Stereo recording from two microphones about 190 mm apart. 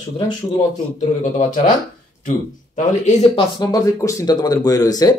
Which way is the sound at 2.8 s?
40° left (ahead or behind).